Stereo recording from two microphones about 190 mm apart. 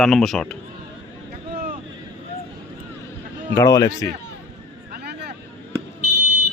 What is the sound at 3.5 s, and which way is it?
Speech, 20° left (ahead or behind).